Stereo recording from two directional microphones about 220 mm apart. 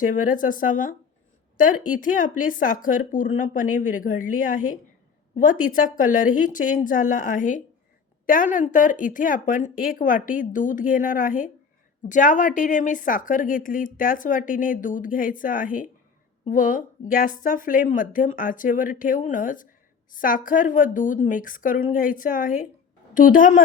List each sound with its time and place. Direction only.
0.0 s a woman's voice: 35° left (ahead or behind)